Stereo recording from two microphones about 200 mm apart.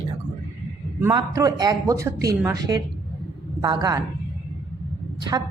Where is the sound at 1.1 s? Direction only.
20° right (ahead or behind).